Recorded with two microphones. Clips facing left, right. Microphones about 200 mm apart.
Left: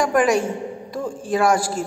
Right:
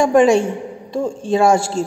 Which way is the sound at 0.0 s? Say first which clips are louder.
Right 6 dB; 25° right (ahead or behind).